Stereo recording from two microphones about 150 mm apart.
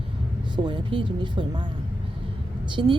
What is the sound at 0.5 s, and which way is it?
A woman's voice, 30° right (ahead or behind).